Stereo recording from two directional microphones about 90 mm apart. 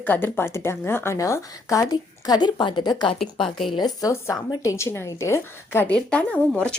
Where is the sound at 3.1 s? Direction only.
5° left (ahead or behind).